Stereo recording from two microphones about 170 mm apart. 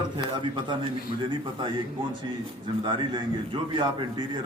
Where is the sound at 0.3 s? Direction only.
25° right (ahead or behind).